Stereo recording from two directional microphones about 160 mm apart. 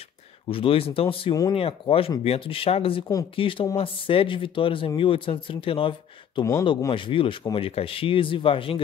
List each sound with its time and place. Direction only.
0.5 s speech: 35° left (ahead or behind)